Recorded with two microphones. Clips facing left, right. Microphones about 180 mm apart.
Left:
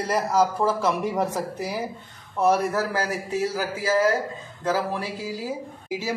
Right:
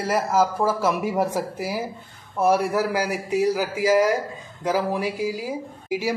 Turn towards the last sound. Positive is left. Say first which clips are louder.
# right 4 dB
turn(degrees=-15)  # may be behind; listen again after turning